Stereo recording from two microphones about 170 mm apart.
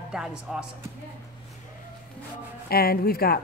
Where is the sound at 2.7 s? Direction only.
65° left (ahead or behind).